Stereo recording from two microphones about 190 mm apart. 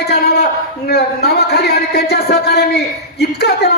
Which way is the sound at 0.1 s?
60° left (ahead or behind).